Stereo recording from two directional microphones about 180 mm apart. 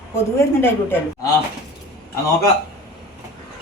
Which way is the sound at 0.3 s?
15° left (ahead or behind).